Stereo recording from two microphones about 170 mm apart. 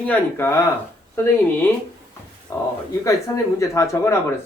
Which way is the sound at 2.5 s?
15° left (ahead or behind).